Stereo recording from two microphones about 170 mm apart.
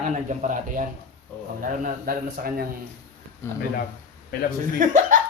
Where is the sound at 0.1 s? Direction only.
45° right (ahead or behind).